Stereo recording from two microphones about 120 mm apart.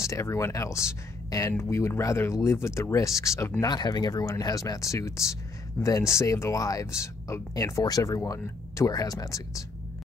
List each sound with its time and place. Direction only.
0.0 s speech: 25° left (ahead or behind)
3.6 s speech: 35° left (ahead or behind)